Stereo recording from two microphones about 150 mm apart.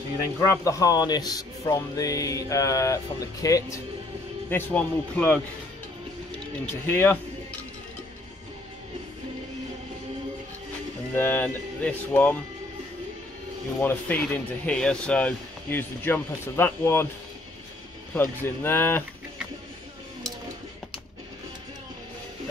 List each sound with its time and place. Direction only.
0.7 s speech: 25° left (ahead or behind)
6.6 s speech: 15° left (ahead or behind)
11.1 s speech: 15° left (ahead or behind)
13.7 s speech: 15° left (ahead or behind)
18.1 s speech: 15° left (ahead or behind)